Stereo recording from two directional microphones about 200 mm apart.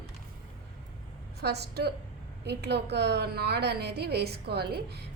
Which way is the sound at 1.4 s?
55° right (ahead or behind).